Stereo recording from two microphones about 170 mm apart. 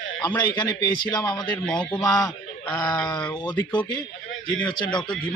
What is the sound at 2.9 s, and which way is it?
A man's voice, 25° left (ahead or behind).